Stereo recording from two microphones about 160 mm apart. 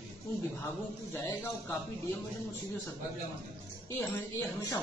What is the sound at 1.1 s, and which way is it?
Speech, 15° left (ahead or behind).